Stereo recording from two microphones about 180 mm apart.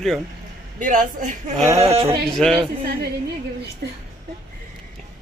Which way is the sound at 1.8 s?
30° right (ahead or behind).